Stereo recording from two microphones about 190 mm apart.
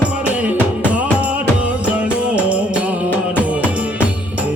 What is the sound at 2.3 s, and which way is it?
Music, 5° right (ahead or behind).